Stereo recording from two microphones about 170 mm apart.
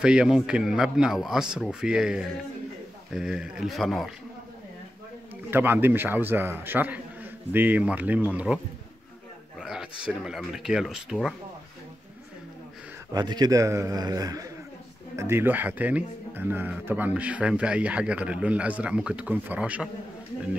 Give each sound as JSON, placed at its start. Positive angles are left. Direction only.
{"t": 0.0, "sound": "speech", "side_deg": -5}
{"t": 5.5, "sound": "speech", "side_deg": -10}
{"t": 9.6, "sound": "a sound", "side_deg": -5}
{"t": 10.0, "sound": "speech", "side_deg": -5}
{"t": 13.1, "sound": "a man's voice", "side_deg": -25}